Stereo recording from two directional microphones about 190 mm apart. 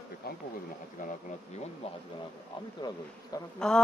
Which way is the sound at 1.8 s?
30° left (ahead or behind).